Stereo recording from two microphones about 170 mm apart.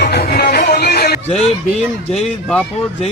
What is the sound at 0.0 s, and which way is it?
Music, 70° left (ahead or behind).